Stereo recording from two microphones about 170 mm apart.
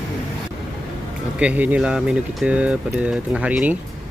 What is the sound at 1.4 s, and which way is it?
Speech, 10° right (ahead or behind).